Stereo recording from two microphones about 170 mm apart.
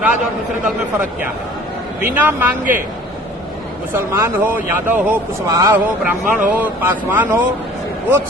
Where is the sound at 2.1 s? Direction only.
10° right (ahead or behind).